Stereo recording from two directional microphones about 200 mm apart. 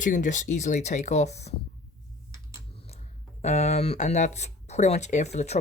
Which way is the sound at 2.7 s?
30° left (ahead or behind).